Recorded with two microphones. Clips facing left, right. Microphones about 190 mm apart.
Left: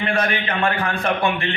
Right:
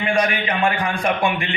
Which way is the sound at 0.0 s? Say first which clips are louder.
Right 2 dB; 15° right (ahead or behind).